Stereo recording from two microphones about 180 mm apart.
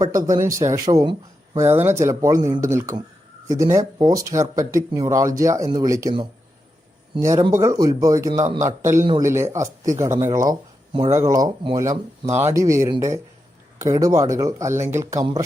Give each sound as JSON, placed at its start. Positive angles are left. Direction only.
{"t": 0.0, "sound": "speech", "side_deg": -20}
{"t": 13.7, "sound": "speech", "side_deg": -20}